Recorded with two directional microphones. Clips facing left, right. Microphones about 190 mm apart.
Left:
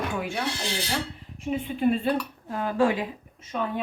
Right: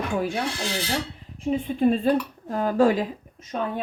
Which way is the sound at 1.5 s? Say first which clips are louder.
Right 3 dB; 35° right (ahead or behind).